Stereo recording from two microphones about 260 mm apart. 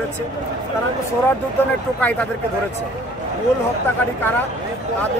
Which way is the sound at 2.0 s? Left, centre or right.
Centre.